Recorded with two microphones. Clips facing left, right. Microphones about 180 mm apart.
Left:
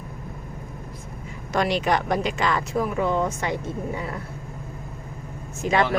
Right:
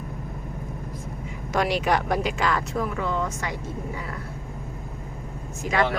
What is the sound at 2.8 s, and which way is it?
Speech, 20° left (ahead or behind).